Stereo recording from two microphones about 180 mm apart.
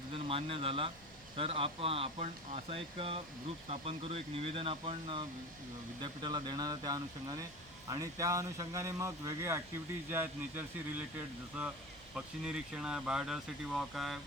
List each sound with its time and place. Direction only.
0.1 s speech: 30° right (ahead or behind); by 11.0 s 10° right (ahead or behind)
12.1 s speech: 5° right (ahead or behind)